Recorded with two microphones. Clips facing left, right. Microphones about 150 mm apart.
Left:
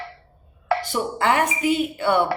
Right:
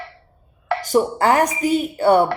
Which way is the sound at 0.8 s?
40° right (ahead or behind).